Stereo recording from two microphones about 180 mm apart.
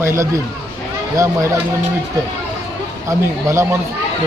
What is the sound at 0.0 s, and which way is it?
Speech, 15° right (ahead or behind).